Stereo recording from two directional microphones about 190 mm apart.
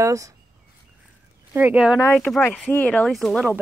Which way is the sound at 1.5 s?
10° right (ahead or behind).